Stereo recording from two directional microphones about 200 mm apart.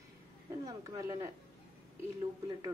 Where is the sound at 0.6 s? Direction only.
15° right (ahead or behind).